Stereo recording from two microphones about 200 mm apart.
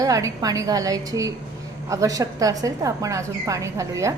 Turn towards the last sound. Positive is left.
turn(degrees=-15)  # may be behind; listen again after turning